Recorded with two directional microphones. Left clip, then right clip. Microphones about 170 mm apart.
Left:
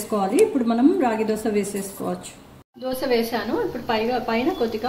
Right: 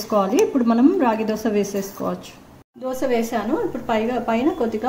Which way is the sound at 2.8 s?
65° right (ahead or behind).